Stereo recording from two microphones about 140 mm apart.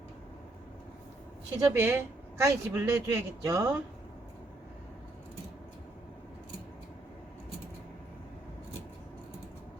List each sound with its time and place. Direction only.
1.5 s speech: 20° right (ahead or behind)